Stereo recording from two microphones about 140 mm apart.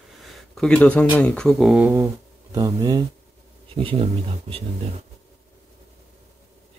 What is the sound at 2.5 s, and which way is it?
Speech, 25° right (ahead or behind).